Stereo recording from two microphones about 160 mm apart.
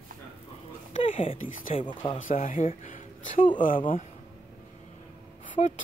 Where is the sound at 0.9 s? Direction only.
35° left (ahead or behind).